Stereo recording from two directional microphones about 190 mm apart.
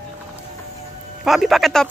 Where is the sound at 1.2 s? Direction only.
Centre (ahead or behind).